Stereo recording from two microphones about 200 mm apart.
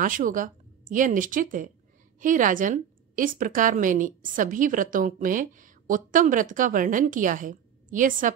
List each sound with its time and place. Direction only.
0.0 s a woman's voice: 40° right (ahead or behind)